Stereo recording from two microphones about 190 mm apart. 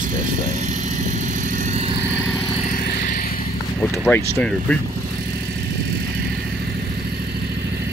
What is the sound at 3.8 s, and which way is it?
Speech, 10° left (ahead or behind).